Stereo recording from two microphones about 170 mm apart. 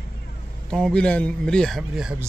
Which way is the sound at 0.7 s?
Centre (ahead or behind).